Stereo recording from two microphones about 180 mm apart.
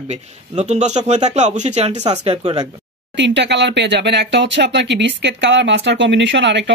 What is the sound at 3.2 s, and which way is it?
Speech, 80° right.